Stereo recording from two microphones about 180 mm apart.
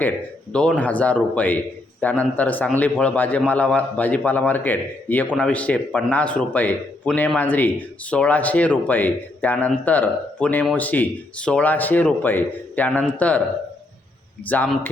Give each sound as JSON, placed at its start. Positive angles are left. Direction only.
{"t": 0.5, "sound": "a man's voice", "side_deg": 5}
{"t": 14.4, "sound": "a man's voice", "side_deg": 10}